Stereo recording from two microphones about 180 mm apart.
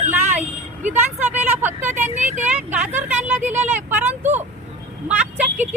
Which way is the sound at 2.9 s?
10° right (ahead or behind).